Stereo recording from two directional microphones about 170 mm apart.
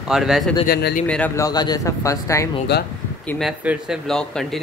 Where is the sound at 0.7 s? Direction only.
65° left (ahead or behind).